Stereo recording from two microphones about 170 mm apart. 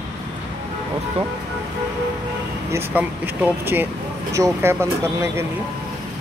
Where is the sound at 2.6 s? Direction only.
15° right (ahead or behind).